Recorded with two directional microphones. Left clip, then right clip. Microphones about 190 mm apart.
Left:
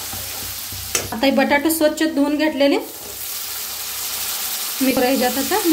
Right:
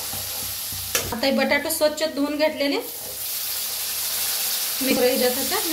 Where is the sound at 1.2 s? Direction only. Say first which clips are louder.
Left 5 dB; 60° left (ahead or behind).